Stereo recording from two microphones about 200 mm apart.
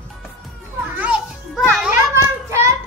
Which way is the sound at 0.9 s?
5° right (ahead or behind).